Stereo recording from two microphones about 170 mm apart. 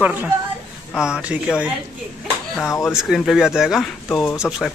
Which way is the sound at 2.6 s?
15° left (ahead or behind).